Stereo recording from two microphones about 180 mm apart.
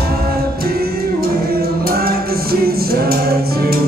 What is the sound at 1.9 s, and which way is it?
Music, 55° right (ahead or behind).